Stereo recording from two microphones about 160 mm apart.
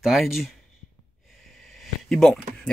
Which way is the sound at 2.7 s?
5° left (ahead or behind).